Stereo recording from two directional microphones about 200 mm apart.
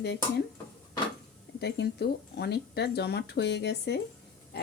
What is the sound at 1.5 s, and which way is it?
Speech, 55° left (ahead or behind).